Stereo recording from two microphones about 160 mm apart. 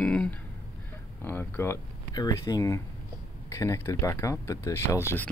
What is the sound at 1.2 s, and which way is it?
Speech, 15° left (ahead or behind).